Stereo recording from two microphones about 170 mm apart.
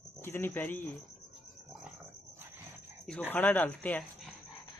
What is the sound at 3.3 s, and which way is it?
Speech, 10° left (ahead or behind).